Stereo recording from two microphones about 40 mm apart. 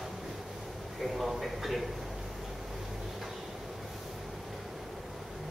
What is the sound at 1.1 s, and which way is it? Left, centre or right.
Speech, centre.